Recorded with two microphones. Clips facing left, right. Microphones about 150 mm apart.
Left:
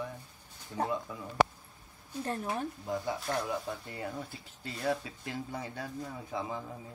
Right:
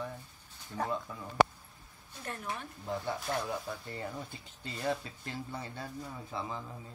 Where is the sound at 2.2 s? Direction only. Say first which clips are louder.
Left 5 dB; 35° left (ahead or behind).